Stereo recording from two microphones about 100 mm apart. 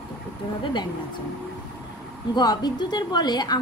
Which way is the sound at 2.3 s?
45° left (ahead or behind).